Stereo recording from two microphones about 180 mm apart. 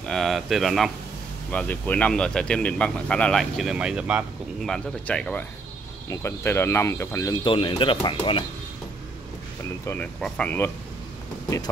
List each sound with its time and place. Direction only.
0.1 s speech: centre (ahead or behind)
7.4 s speech: 25° left (ahead or behind)
9.8 s speech: 5° left (ahead or behind)